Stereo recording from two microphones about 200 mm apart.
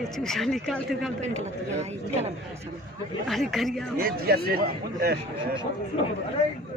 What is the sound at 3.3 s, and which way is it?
Speech, centre (ahead or behind).